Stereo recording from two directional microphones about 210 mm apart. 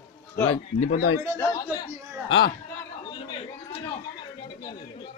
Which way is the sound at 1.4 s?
15° left (ahead or behind).